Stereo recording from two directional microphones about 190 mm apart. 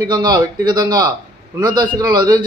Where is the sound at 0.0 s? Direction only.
20° right (ahead or behind).